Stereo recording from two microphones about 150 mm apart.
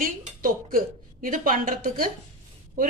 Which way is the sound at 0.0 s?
70° right (ahead or behind).